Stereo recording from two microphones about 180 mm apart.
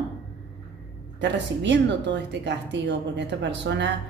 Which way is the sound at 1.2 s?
75° right (ahead or behind).